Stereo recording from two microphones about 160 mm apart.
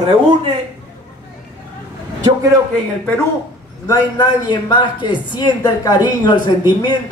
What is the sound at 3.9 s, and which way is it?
A man's voice, 25° left (ahead or behind).